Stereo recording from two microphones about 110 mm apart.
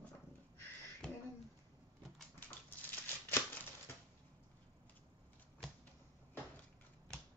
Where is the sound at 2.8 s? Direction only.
15° left (ahead or behind).